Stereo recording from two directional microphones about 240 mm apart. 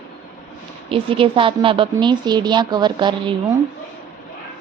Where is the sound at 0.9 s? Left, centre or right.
Right.